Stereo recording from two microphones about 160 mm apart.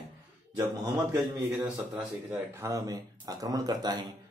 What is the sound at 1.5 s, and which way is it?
Speech, 10° right (ahead or behind).